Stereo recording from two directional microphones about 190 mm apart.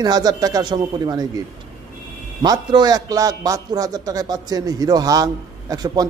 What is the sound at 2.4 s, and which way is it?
A man's voice, 20° right (ahead or behind).